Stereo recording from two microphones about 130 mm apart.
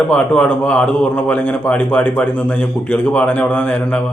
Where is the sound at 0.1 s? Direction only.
5° left (ahead or behind).